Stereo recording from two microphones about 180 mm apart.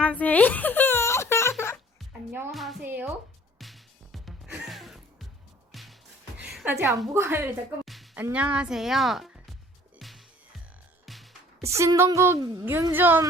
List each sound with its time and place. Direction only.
0.0 s a sound: 10° left (ahead or behind)
2.5 s music: centre (ahead or behind)
2.8 s music: 10° right (ahead or behind)
3.6 s music: centre (ahead or behind)
7.1 s a woman's voice: 15° right (ahead or behind)
7.9 s music: centre (ahead or behind)
8.2 s a woman's voice: 5° right (ahead or behind)
10.0 s music: centre (ahead or behind)
11.6 s a woman's voice: 15° right (ahead or behind)